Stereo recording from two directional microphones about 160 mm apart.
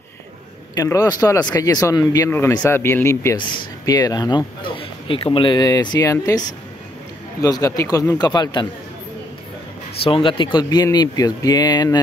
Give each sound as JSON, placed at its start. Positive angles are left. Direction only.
{"t": 0.7, "sound": "speech", "side_deg": 20}
{"t": 7.4, "sound": "speech", "side_deg": 20}
{"t": 10.0, "sound": "speech", "side_deg": 35}